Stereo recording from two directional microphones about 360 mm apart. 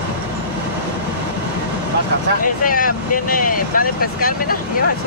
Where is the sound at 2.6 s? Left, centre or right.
Left.